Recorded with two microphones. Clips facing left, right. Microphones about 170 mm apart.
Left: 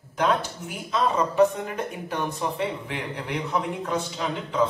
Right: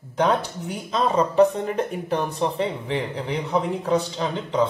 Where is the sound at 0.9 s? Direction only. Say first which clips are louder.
Right 3 dB; 30° right (ahead or behind).